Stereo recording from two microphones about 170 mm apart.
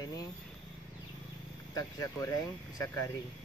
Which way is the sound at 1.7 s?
20° left (ahead or behind).